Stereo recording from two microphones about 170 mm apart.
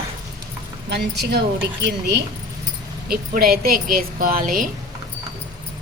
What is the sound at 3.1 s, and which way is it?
A woman's voice, 60° right (ahead or behind).